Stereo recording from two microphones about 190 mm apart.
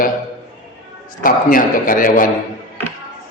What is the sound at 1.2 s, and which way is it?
A man's voice, 45° left (ahead or behind).